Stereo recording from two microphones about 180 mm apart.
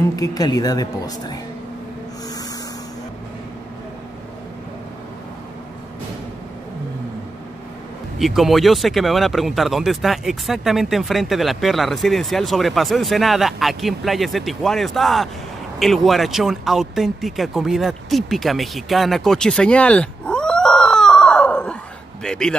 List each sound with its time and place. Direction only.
0.1 s a woman's voice: 20° left (ahead or behind)
8.2 s speech: centre (ahead or behind)